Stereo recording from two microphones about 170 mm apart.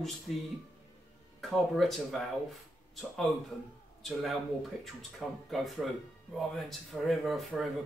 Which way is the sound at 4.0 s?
Centre (ahead or behind).